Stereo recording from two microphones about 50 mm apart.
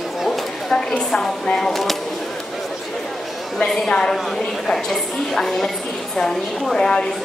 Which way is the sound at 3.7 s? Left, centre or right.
Centre.